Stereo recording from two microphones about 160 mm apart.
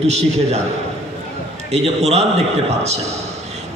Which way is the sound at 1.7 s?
45° right (ahead or behind).